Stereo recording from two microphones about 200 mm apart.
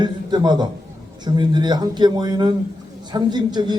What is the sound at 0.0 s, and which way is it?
A man's voice, 20° right (ahead or behind).